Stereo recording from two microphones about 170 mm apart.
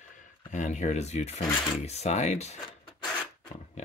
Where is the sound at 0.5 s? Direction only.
45° left (ahead or behind).